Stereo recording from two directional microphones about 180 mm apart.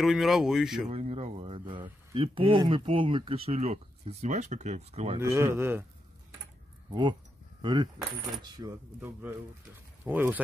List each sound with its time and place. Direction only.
0.0 s speech: centre (ahead or behind)
0.8 s speech: 35° right (ahead or behind)
5.2 s speech: 15° right (ahead or behind)
6.9 s speech: 25° right (ahead or behind); by 10.4 s 10° right (ahead or behind)